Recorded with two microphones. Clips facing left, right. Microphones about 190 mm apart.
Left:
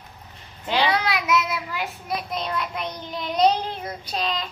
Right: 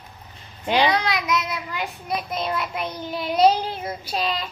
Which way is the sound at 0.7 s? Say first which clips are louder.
Right 3 dB; 15° right (ahead or behind).